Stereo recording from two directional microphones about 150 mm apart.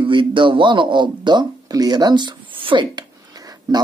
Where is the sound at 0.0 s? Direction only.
35° right (ahead or behind).